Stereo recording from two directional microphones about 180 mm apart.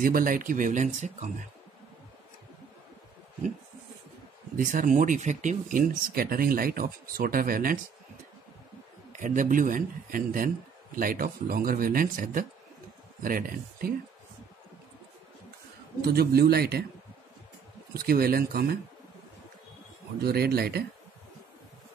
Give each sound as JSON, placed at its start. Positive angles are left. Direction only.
{"t": 0.0, "sound": "speech", "side_deg": -50}
{"t": 4.6, "sound": "speech", "side_deg": -45}
{"t": 9.2, "sound": "speech", "side_deg": -45}
{"t": 16.0, "sound": "a man's voice", "side_deg": -60}
{"t": 17.9, "sound": "a man's voice", "side_deg": -55}
{"t": 20.2, "sound": "a man's voice", "side_deg": -60}